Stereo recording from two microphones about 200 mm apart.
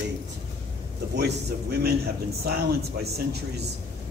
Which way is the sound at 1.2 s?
50° right (ahead or behind).